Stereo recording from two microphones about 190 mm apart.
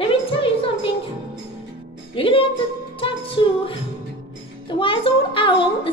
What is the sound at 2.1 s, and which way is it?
Music, 30° left (ahead or behind).